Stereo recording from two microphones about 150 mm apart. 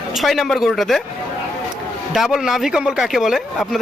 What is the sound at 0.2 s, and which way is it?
Speech, centre (ahead or behind).